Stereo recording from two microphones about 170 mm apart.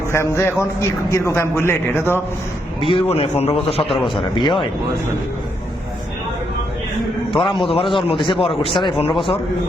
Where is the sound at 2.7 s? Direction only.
30° left (ahead or behind).